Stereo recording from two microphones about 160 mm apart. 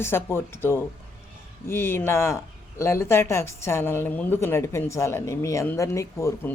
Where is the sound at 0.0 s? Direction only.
15° left (ahead or behind).